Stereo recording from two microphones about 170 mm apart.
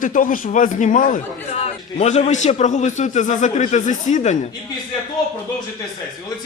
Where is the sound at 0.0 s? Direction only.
55° left (ahead or behind).